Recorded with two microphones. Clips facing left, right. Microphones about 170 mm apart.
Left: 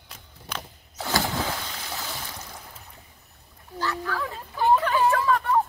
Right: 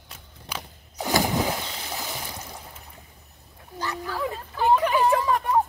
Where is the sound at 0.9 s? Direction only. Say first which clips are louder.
Right 3 dB; 15° right (ahead or behind).